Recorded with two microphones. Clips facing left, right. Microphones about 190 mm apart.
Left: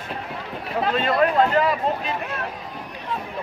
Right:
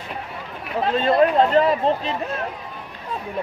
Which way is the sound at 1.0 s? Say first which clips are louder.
Right 3 dB; 30° right (ahead or behind).